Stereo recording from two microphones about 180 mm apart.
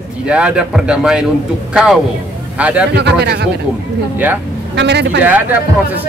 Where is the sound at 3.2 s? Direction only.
65° right (ahead or behind).